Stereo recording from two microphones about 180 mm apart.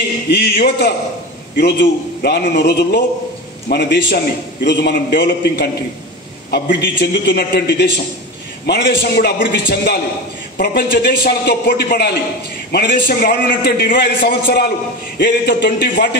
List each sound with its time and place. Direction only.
0.3 s a man's voice: 70° left (ahead or behind)